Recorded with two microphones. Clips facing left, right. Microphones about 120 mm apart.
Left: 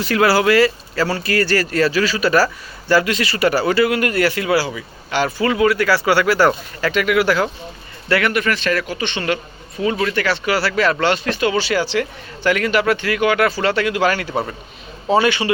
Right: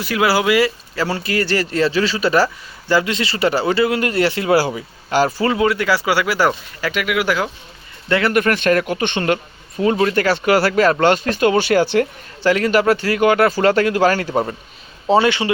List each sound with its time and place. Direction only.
0.0 s speech: 10° right (ahead or behind); by 4.5 s 30° right (ahead or behind)
4.5 s speech: 45° right (ahead or behind); by 7.5 s 15° right (ahead or behind)
8.3 s speech: 50° right (ahead or behind)
12.4 s speech: 30° right (ahead or behind)
15.1 s speech: 25° right (ahead or behind)